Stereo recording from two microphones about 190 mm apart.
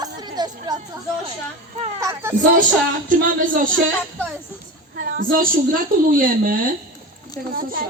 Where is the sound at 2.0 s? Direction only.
15° right (ahead or behind).